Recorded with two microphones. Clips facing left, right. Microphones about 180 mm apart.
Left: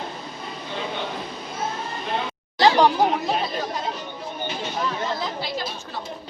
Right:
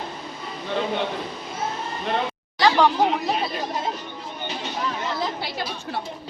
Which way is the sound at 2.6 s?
20° left (ahead or behind).